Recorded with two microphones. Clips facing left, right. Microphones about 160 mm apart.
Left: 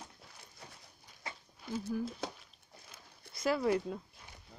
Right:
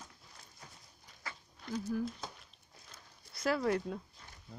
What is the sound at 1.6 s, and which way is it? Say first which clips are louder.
Speech: right 1 dB; 5° left (ahead or behind).